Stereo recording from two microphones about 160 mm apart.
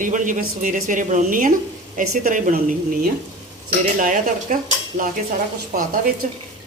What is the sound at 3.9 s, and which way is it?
Speech, 55° right (ahead or behind).